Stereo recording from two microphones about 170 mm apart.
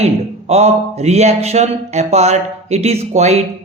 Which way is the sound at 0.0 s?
40° right (ahead or behind).